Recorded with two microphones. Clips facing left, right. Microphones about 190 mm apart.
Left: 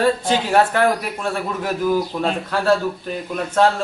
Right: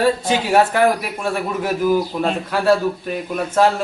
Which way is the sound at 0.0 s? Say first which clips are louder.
Right 1 dB; 10° right (ahead or behind).